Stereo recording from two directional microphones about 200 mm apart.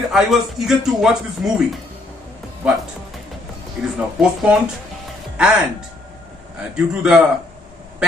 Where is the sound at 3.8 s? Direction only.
Centre (ahead or behind).